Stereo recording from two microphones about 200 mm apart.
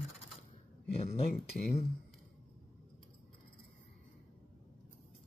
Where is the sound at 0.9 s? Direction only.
30° left (ahead or behind).